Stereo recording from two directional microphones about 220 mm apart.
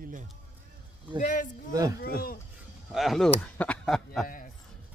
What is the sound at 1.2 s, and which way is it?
Speech, 35° left (ahead or behind).